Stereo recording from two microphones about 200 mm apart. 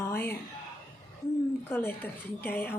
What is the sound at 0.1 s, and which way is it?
Music, 10° left (ahead or behind).